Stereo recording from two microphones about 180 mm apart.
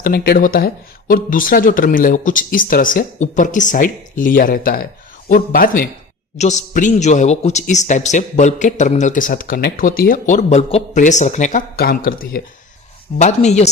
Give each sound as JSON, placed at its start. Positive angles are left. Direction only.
{"t": 0.0, "sound": "a man's voice", "side_deg": 60}
{"t": 13.1, "sound": "speech", "side_deg": 40}